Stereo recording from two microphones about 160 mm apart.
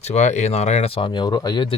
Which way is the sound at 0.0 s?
45° left (ahead or behind).